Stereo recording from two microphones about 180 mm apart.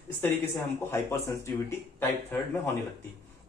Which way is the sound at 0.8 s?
15° left (ahead or behind).